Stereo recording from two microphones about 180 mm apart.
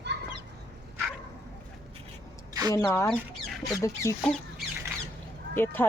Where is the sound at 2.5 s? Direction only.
20° right (ahead or behind).